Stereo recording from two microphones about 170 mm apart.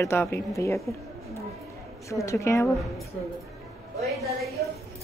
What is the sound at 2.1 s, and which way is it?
Speech, 20° left (ahead or behind).